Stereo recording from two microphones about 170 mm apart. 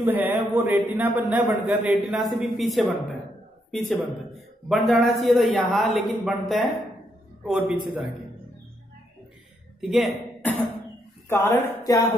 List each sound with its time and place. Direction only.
0.0 s a man's voice: 10° right (ahead or behind)
9.8 s a sound: centre (ahead or behind)
11.2 s speech: 15° left (ahead or behind)